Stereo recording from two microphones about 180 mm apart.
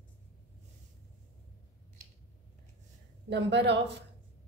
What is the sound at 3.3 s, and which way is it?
Speech, 70° right (ahead or behind).